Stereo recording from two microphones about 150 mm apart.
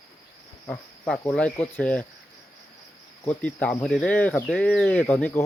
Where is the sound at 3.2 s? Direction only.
10° left (ahead or behind).